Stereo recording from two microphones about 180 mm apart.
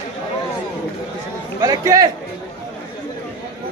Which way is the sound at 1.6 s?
20° right (ahead or behind).